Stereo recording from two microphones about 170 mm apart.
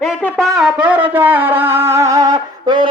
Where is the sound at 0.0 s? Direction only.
Centre (ahead or behind).